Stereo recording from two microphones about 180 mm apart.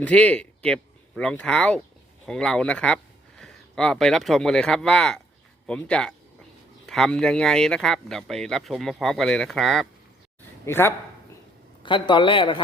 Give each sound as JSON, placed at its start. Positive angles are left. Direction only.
{"t": 0.0, "sound": "speech", "side_deg": 5}
{"t": 10.7, "sound": "speech", "side_deg": 15}
{"t": 11.8, "sound": "a man's voice", "side_deg": 25}